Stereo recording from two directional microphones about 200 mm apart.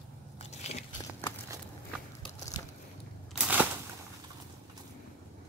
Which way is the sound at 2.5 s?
20° left (ahead or behind).